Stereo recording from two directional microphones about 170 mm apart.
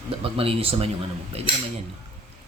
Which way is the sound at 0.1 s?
35° right (ahead or behind).